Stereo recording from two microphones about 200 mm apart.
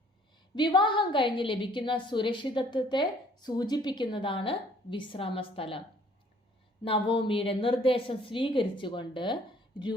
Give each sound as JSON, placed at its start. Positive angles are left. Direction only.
{"t": 0.5, "sound": "a woman's voice", "side_deg": 20}
{"t": 6.8, "sound": "a woman's voice", "side_deg": 25}